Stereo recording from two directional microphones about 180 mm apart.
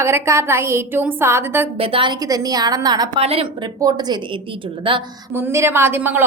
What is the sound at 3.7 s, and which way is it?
Speech, 20° right (ahead or behind).